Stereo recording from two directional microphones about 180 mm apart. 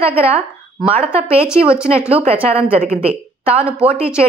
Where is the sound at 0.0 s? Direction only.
35° right (ahead or behind).